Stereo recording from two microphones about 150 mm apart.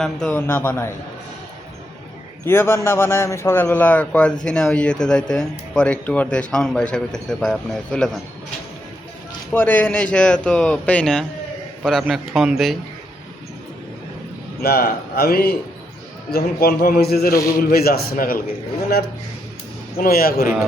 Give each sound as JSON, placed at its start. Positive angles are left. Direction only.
{"t": 0.0, "sound": "a man's voice", "side_deg": 5}
{"t": 2.5, "sound": "a man's voice", "side_deg": 15}
{"t": 9.5, "sound": "a man's voice", "side_deg": 10}
{"t": 14.6, "sound": "a man's voice", "side_deg": 90}
{"t": 20.0, "sound": "a man's voice", "side_deg": 80}